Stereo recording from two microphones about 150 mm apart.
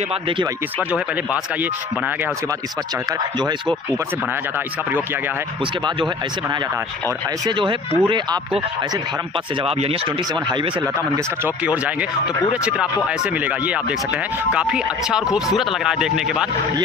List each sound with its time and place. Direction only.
0.9 s speech: 10° right (ahead or behind)
3.1 s speech: 30° right (ahead or behind)
7.4 s speech: 30° right (ahead or behind)
9.6 s speech: 40° right (ahead or behind)
11.0 s speech: 10° right (ahead or behind)